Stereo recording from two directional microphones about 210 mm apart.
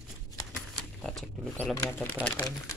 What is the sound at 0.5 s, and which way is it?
Speech, centre (ahead or behind).